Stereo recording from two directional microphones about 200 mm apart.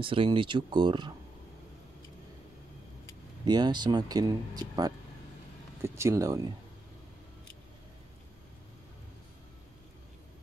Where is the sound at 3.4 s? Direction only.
20° right (ahead or behind).